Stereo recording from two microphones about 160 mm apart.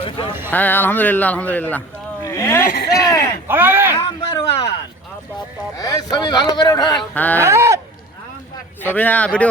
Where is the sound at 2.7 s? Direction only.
90° left.